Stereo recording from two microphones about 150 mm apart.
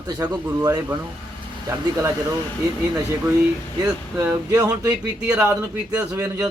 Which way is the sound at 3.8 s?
20° right (ahead or behind).